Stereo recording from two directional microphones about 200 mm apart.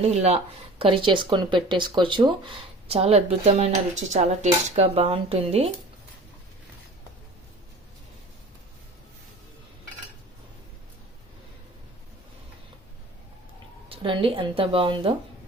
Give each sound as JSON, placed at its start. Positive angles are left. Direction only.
{"t": 0.0, "sound": "speech", "side_deg": -35}
{"t": 13.9, "sound": "speech", "side_deg": -25}